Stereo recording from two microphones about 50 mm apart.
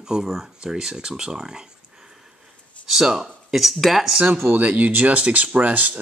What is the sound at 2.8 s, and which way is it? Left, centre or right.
Speech, centre.